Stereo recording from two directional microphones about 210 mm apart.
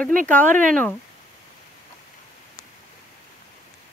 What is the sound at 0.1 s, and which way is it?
Speech, 40° right (ahead or behind).